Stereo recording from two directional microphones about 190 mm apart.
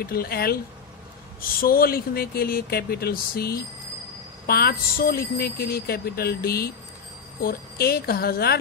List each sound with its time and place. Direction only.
0.0 s speech: 50° left (ahead or behind)